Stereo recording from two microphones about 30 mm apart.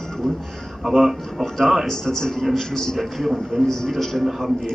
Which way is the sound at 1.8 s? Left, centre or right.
Centre.